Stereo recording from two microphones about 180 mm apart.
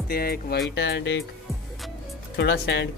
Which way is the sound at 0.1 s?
55° left (ahead or behind).